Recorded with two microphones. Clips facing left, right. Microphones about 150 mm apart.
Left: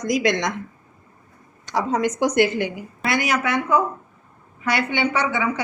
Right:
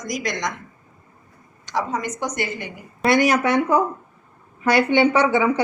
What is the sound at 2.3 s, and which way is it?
Speech, 85° left.